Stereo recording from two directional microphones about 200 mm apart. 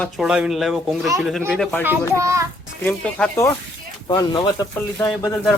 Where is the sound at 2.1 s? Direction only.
15° right (ahead or behind).